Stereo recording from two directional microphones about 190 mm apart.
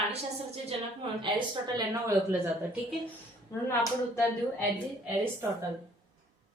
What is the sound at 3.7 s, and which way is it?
Speech, 15° left (ahead or behind).